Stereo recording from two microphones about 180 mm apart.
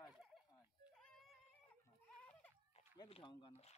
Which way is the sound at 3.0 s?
30° left (ahead or behind).